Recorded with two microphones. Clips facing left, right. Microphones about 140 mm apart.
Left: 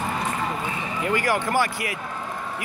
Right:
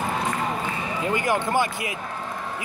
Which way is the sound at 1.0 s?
20° right (ahead or behind).